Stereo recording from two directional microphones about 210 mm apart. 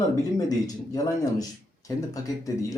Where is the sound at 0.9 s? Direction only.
15° left (ahead or behind).